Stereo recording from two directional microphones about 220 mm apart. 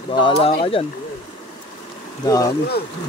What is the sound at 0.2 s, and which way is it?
Speech, 25° left (ahead or behind).